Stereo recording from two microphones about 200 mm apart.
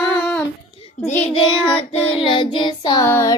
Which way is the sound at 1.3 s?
25° left (ahead or behind).